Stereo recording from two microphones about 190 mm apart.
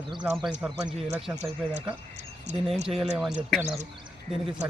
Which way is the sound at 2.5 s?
35° right (ahead or behind).